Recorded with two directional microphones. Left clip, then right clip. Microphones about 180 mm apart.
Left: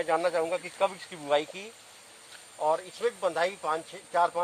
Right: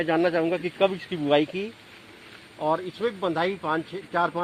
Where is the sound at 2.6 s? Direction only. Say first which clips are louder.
Right 2 dB; 45° right (ahead or behind).